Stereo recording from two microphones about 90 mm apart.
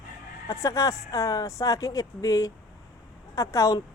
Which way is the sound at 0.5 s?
40° left (ahead or behind).